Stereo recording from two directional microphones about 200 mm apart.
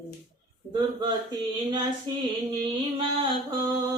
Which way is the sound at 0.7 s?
20° right (ahead or behind).